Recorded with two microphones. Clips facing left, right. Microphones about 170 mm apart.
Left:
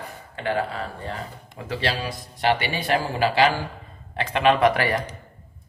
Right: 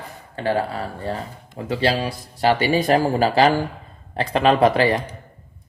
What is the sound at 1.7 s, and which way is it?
Speech, 30° right (ahead or behind).